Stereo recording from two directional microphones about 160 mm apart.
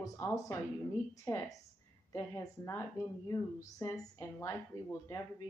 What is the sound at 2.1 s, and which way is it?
A woman's voice, 15° left (ahead or behind).